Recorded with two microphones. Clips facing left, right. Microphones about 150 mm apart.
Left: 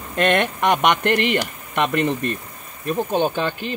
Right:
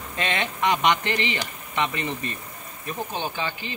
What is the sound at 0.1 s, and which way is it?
Speech, 60° left (ahead or behind).